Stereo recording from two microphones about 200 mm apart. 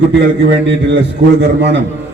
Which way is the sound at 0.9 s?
60° right (ahead or behind).